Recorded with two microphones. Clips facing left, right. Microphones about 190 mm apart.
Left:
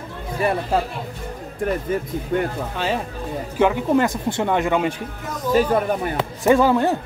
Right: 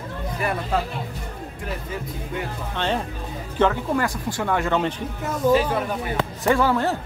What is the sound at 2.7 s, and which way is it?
Speech, 5° left (ahead or behind).